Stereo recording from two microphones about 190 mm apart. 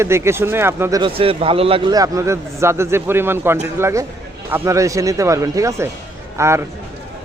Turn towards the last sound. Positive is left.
turn(degrees=-15)  # may be behind; listen again after turning